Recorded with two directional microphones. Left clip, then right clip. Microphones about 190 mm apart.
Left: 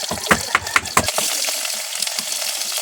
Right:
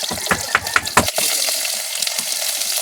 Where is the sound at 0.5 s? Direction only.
65° left (ahead or behind).